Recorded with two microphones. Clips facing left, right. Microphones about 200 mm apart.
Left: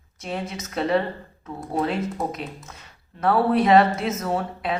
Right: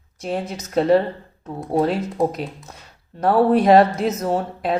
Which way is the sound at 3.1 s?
40° right (ahead or behind).